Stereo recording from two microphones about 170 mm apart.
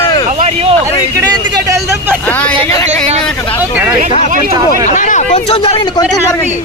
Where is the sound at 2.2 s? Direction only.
10° left (ahead or behind).